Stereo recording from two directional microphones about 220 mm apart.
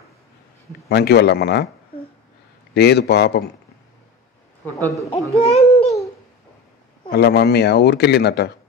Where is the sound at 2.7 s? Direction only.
50° left (ahead or behind).